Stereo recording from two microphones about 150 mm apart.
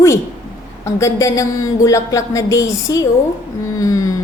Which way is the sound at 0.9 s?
20° left (ahead or behind).